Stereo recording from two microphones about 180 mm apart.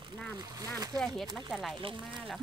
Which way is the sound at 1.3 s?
Centre (ahead or behind).